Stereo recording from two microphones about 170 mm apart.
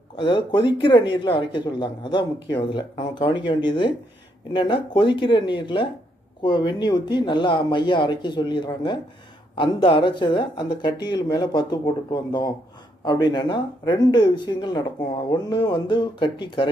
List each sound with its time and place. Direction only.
0.1 s speech: 30° left (ahead or behind)